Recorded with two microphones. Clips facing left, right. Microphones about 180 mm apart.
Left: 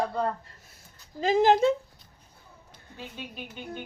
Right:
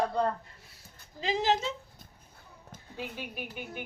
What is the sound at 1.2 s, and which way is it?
Speech, 50° left (ahead or behind).